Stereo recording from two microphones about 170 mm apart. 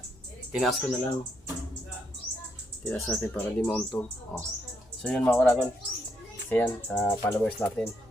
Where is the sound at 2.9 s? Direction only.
15° left (ahead or behind).